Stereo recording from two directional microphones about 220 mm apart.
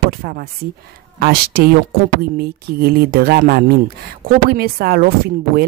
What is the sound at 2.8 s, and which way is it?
Speech, 45° right (ahead or behind).